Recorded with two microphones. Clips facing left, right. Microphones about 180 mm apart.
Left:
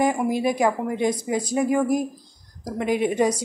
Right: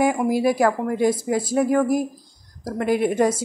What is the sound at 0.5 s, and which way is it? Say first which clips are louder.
Speech: right 2 dB; 15° left (ahead or behind).